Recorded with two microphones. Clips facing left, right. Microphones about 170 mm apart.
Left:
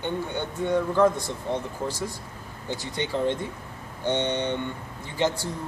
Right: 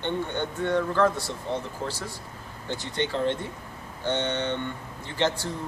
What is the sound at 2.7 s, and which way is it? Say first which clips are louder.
Speech: even; 10° left (ahead or behind).